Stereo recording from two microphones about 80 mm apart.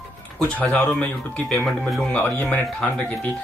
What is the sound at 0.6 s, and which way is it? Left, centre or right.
Speech, centre.